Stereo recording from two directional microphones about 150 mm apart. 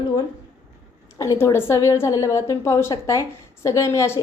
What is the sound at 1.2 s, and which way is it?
A woman's voice, 20° left (ahead or behind).